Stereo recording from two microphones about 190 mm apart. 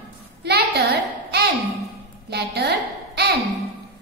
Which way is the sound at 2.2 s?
60° right (ahead or behind).